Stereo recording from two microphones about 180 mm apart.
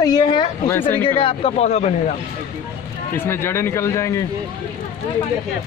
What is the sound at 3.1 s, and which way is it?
Speech, 15° left (ahead or behind).